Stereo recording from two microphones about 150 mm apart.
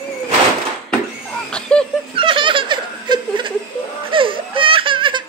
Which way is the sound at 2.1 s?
35° right (ahead or behind).